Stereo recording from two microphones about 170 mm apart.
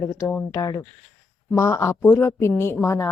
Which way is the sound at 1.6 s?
15° left (ahead or behind).